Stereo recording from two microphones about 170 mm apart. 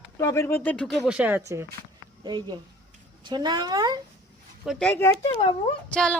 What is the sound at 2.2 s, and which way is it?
Speech, 25° right (ahead or behind).